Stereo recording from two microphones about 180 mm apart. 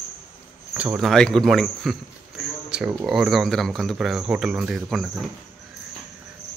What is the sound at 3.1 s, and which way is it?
Speech, centre (ahead or behind).